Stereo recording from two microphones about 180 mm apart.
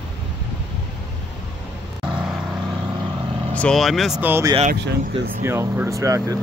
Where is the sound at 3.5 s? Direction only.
5° left (ahead or behind).